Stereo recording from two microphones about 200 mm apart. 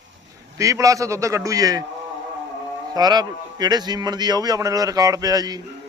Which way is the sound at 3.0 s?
20° right (ahead or behind).